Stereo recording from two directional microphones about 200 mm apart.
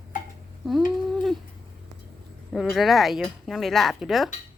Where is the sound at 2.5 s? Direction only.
Centre (ahead or behind).